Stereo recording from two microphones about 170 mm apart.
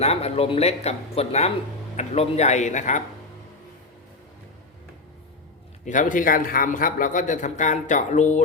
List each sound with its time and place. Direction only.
0.0 s a man's voice: 40° left (ahead or behind)
5.8 s a man's voice: 50° left (ahead or behind)